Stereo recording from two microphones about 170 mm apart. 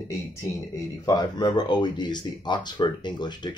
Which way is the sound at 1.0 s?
20° left (ahead or behind).